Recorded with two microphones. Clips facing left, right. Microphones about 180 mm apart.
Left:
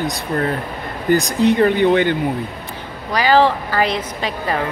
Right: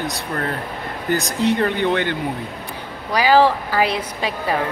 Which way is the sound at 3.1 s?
10° right (ahead or behind).